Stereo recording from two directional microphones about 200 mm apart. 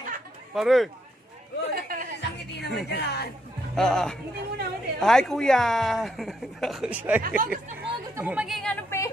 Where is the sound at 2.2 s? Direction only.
60° left (ahead or behind).